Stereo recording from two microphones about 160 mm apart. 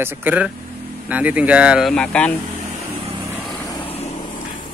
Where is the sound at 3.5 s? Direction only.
20° left (ahead or behind).